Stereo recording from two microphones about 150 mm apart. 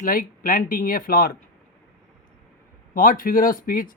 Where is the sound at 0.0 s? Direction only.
70° left (ahead or behind).